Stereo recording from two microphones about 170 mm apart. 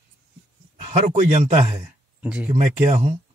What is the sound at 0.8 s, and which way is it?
Speech, 45° right (ahead or behind).